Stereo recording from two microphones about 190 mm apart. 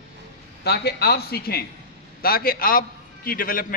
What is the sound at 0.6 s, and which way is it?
A man's voice, 60° left (ahead or behind).